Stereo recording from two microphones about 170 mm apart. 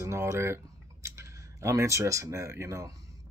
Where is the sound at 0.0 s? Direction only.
15° right (ahead or behind).